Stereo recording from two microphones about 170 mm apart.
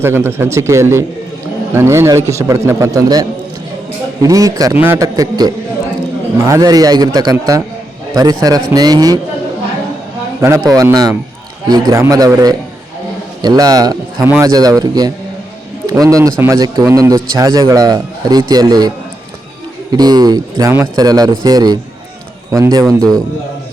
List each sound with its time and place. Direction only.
0.0 s a man's voice: 15° right (ahead or behind)
10.4 s a man's voice: 20° right (ahead or behind)
19.9 s a man's voice: 25° right (ahead or behind)